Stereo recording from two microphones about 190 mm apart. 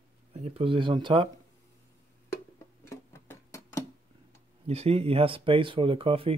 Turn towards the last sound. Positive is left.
turn(degrees=-30)  # may be behind; listen again after turning